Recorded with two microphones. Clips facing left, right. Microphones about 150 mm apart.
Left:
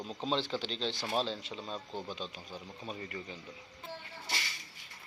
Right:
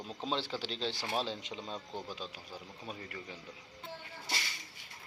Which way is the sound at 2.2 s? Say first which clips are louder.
Left 2 dB; 5° right (ahead or behind).